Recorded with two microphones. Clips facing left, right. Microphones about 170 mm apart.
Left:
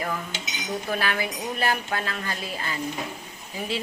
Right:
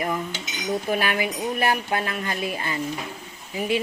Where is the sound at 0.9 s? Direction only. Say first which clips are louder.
Right 2 dB; 15° right (ahead or behind).